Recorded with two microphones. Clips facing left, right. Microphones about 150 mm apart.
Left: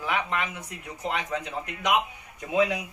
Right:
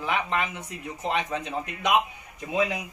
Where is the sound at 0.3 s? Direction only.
20° right (ahead or behind).